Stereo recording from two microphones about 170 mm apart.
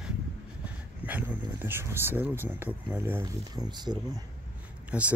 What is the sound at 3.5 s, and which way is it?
Speech, 25° right (ahead or behind).